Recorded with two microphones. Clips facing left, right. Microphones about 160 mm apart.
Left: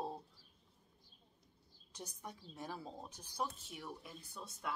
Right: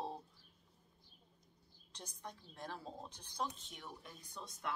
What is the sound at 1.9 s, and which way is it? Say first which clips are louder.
Speech: left 1 dB; 10° left (ahead or behind).